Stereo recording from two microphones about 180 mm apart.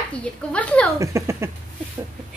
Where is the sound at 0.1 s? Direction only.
5° left (ahead or behind).